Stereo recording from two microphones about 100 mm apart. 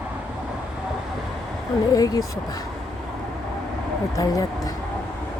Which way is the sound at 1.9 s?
35° left (ahead or behind).